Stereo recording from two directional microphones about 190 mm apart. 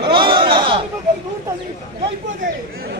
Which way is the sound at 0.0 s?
25° right (ahead or behind).